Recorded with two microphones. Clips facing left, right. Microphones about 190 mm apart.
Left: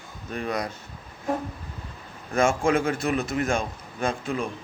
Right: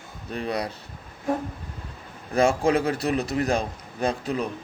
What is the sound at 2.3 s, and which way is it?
A man's voice, 35° right (ahead or behind).